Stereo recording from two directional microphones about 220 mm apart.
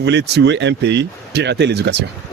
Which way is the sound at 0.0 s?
50° right (ahead or behind).